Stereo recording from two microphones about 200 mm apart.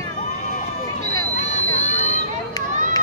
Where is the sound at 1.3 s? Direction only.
35° left (ahead or behind).